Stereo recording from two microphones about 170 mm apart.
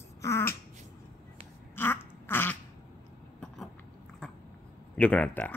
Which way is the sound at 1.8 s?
15° left (ahead or behind).